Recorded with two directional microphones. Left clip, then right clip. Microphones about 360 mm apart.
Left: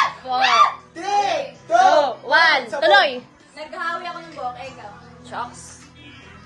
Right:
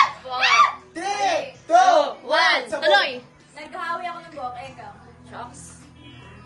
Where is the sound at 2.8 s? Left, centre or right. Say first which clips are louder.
Left 5 dB; left.